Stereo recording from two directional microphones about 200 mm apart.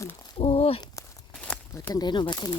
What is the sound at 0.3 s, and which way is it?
Speech, 30° left (ahead or behind).